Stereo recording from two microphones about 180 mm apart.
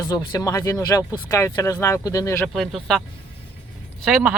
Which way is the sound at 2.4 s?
Centre (ahead or behind).